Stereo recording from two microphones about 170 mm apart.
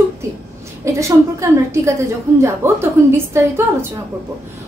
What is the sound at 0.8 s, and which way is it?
A woman's voice, 15° right (ahead or behind).